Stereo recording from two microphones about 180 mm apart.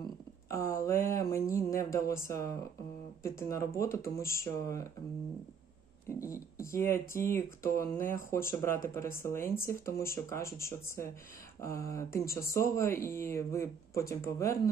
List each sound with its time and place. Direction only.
0.5 s a sound: 15° left (ahead or behind)
3.2 s speech: 15° left (ahead or behind)
6.0 s speech: 15° left (ahead or behind)